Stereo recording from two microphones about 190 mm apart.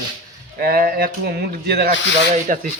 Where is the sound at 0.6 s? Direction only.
50° right (ahead or behind).